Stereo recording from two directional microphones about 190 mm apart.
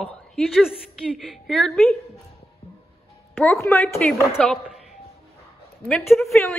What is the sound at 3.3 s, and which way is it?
A woman's voice, 15° left (ahead or behind).